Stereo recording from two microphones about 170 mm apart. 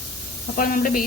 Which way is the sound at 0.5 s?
55° left (ahead or behind).